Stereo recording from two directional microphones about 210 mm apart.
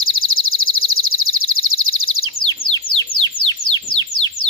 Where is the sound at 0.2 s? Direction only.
75° left (ahead or behind).